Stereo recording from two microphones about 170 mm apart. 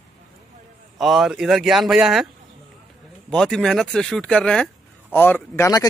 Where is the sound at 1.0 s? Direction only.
Centre (ahead or behind).